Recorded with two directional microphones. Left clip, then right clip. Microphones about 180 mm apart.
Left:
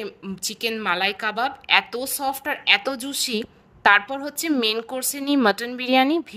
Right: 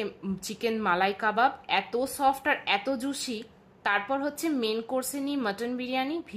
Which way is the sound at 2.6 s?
45° left (ahead or behind).